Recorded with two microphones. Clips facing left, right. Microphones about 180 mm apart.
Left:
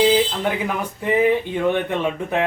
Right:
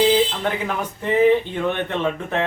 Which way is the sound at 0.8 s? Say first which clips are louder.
Right 3 dB; 10° left (ahead or behind).